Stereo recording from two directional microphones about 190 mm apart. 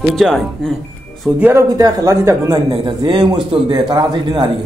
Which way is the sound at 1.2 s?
10° right (ahead or behind).